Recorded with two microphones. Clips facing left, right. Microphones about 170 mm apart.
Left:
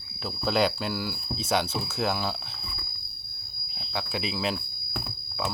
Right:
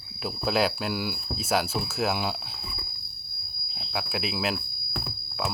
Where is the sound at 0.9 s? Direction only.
15° right (ahead or behind).